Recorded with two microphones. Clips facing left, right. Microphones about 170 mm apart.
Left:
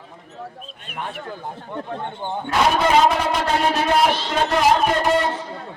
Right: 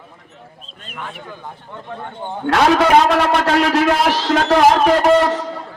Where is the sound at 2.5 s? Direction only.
85° right.